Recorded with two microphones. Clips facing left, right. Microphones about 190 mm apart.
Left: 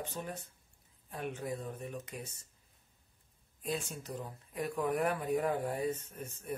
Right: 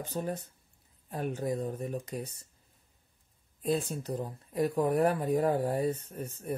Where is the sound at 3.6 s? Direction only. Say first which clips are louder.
Right 8 dB; 35° right (ahead or behind).